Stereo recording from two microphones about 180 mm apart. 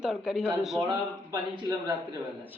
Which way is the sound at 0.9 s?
20° right (ahead or behind).